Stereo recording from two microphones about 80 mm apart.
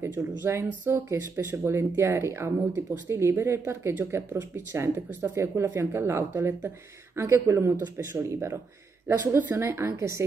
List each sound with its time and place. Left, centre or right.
0.0 s speech: right